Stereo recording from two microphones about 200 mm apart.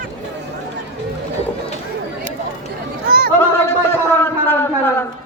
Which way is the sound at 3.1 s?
50° right (ahead or behind).